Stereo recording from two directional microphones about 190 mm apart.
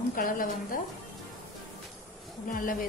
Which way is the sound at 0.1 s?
45° left (ahead or behind).